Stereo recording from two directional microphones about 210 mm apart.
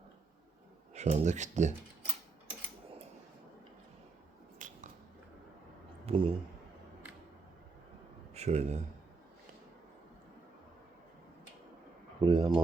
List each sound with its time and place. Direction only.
0.9 s speech: 35° right (ahead or behind)
4.6 s a sound: 40° right (ahead or behind)
6.1 s a man's voice: 25° right (ahead or behind)
8.3 s a man's voice: 30° right (ahead or behind)
12.2 s speech: 25° right (ahead or behind)